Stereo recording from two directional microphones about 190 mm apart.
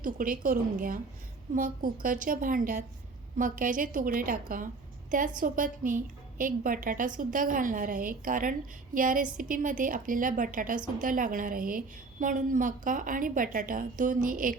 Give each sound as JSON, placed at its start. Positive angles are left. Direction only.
{"t": 0.0, "sound": "a woman's voice", "side_deg": -45}